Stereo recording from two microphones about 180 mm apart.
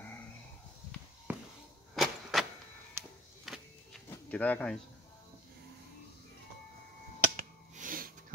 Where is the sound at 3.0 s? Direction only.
15° right (ahead or behind).